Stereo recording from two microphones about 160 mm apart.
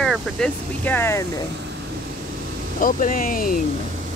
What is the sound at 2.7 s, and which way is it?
Speech, 60° left (ahead or behind).